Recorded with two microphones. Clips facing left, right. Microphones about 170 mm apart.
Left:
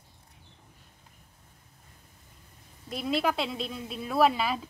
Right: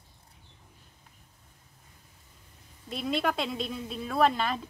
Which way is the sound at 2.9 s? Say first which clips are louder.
Left 1 dB; centre (ahead or behind).